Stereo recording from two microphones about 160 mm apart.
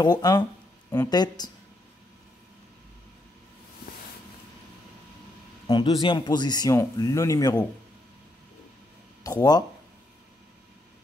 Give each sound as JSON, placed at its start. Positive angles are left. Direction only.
{"t": 0.0, "sound": "speech", "side_deg": 25}
{"t": 5.7, "sound": "speech", "side_deg": 30}
{"t": 9.2, "sound": "speech", "side_deg": 25}